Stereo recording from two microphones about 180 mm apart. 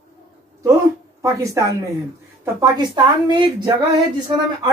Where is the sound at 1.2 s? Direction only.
15° right (ahead or behind).